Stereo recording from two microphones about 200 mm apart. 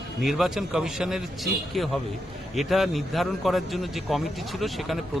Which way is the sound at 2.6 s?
Centre (ahead or behind).